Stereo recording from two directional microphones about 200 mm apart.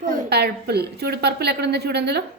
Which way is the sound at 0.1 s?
55° right (ahead or behind).